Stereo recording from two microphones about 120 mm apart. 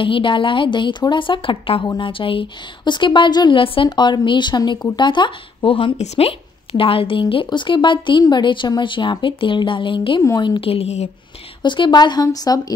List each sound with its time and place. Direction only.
0.0 s a woman's voice: 45° left (ahead or behind); by 11.1 s 60° left (ahead or behind)
11.6 s a woman's voice: 40° left (ahead or behind)